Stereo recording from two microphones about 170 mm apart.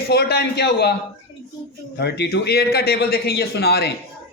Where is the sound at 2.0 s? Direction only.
80° left.